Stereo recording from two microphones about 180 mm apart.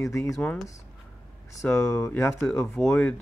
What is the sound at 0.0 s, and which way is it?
Speech, 15° left (ahead or behind).